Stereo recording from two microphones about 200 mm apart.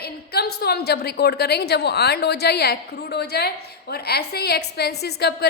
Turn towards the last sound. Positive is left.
turn(degrees=55)  # may be behind; listen again after turning